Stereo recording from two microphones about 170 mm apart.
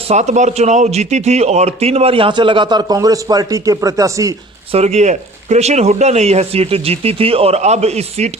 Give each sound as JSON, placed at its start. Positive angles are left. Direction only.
{"t": 0.1, "sound": "a man's voice", "side_deg": -40}
{"t": 4.7, "sound": "a man's voice", "side_deg": -40}